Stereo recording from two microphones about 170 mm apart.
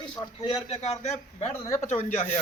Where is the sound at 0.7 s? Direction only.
40° left (ahead or behind).